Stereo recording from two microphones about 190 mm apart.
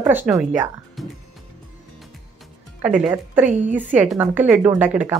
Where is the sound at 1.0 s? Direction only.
Centre (ahead or behind).